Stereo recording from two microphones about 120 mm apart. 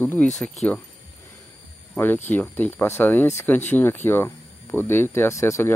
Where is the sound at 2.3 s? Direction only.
15° left (ahead or behind).